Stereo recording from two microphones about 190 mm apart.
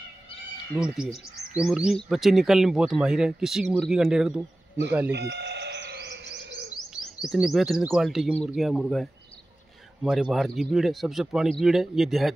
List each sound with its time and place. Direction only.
0.7 s speech: 5° right (ahead or behind)
5.1 s a sound: 60° right (ahead or behind)
6.9 s speech: centre (ahead or behind)